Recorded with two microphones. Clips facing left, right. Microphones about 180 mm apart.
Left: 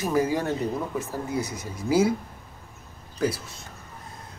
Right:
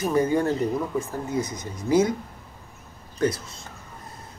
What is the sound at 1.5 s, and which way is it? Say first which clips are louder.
Mantra: right 2 dB; 5° left (ahead or behind).